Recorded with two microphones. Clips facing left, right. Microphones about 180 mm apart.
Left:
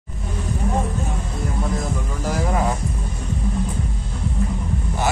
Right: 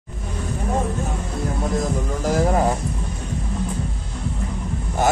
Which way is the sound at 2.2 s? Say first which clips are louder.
Right 3 dB; 45° right (ahead or behind).